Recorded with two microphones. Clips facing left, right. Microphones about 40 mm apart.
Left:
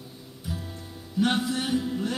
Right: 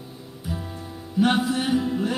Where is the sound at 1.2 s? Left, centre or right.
Centre.